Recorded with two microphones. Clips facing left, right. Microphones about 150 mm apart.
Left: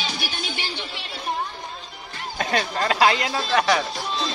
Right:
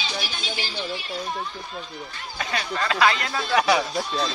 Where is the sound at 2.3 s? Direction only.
45° left (ahead or behind).